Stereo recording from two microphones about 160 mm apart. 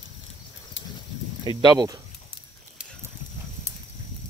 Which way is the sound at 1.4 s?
25° right (ahead or behind).